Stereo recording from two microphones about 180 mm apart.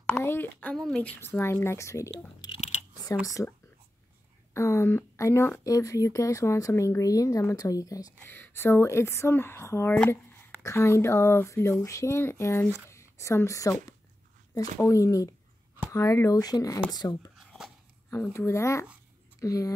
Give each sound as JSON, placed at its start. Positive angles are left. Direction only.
{"t": 0.1, "sound": "speech", "side_deg": 15}
{"t": 4.6, "sound": "speech", "side_deg": 15}
{"t": 12.6, "sound": "speech", "side_deg": -10}
{"t": 12.9, "sound": "a woman's voice", "side_deg": 15}
{"t": 17.4, "sound": "a sound", "side_deg": 0}
{"t": 18.1, "sound": "speech", "side_deg": 15}